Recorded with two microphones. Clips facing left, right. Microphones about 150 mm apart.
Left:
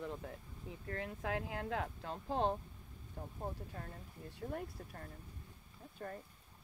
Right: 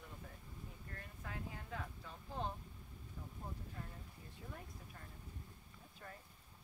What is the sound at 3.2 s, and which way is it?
Speech, 60° left (ahead or behind).